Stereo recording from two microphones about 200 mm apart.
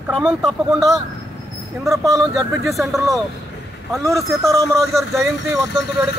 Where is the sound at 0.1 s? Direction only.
5° right (ahead or behind).